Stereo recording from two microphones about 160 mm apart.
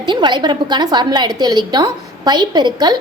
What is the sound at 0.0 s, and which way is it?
Speech, 30° right (ahead or behind).